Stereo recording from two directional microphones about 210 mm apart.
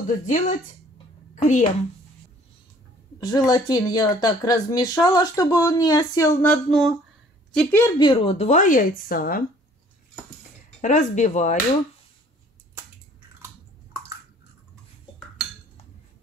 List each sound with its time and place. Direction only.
0.0 s a woman's voice: 35° left (ahead or behind)
3.2 s speech: 20° left (ahead or behind)
8.0 s a woman's voice: 25° left (ahead or behind); by 9.4 s 40° left (ahead or behind)
10.8 s a woman's voice: 35° left (ahead or behind)